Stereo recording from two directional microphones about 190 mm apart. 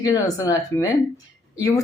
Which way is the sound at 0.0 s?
20° left (ahead or behind).